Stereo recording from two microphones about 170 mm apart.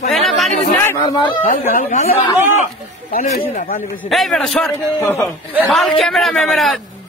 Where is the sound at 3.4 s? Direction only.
55° left (ahead or behind).